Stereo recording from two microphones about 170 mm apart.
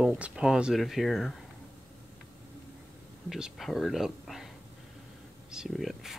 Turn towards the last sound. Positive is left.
turn(degrees=0)  # may be behind; listen again after turning